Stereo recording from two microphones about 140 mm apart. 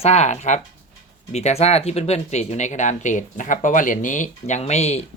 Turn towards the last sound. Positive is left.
turn(degrees=50)  # may be behind; listen again after turning